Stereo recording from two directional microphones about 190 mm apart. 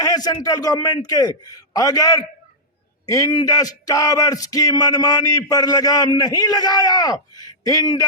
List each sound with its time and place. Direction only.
0.0 s speech: 20° left (ahead or behind)